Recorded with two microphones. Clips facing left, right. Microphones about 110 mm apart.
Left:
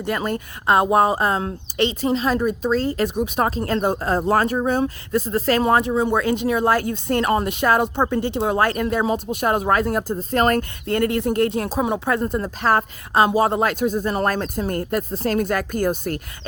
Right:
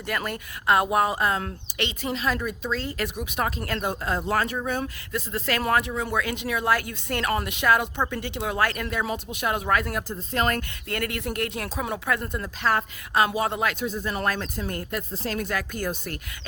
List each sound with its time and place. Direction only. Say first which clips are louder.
0.0 s speech: left 6 dB; 25° left (ahead or behind); by 16.2 s 45° left (ahead or behind)